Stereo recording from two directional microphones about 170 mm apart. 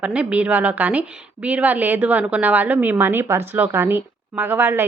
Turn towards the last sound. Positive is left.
turn(degrees=-10)  # may be behind; listen again after turning